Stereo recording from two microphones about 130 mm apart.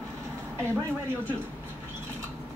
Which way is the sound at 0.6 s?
20° right (ahead or behind).